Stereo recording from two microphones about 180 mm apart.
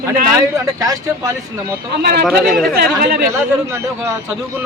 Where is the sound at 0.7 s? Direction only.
20° right (ahead or behind).